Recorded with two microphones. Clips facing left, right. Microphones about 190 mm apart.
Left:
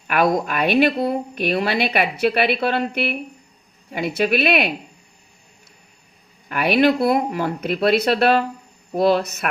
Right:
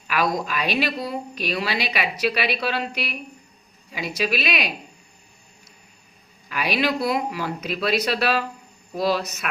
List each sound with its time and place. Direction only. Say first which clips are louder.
0.1 s speech: left 5 dB; 55° left (ahead or behind)
6.5 s speech: left 7 dB; 55° left (ahead or behind)